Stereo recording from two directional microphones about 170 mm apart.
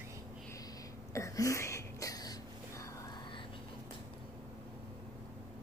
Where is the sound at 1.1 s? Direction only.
15° left (ahead or behind).